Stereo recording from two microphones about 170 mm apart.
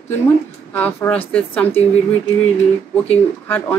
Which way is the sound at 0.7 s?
10° left (ahead or behind).